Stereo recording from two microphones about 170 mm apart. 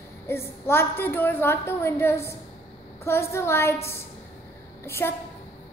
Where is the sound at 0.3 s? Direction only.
15° left (ahead or behind).